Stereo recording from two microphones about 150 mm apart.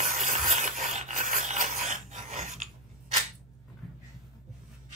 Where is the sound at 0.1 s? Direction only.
60° right (ahead or behind).